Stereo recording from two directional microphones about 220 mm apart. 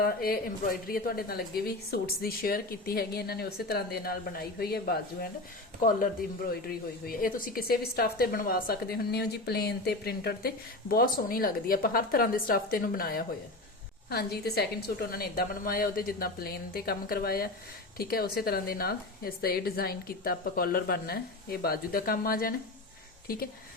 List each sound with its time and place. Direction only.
0.0 s a woman's voice: 45° left (ahead or behind)
6.5 s a woman's voice: 45° left (ahead or behind)